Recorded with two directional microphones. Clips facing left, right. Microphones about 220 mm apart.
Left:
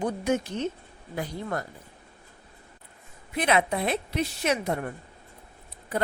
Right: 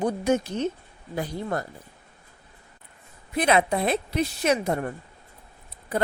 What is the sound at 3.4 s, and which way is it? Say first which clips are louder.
A woman's voice: right 3 dB; 35° right (ahead or behind).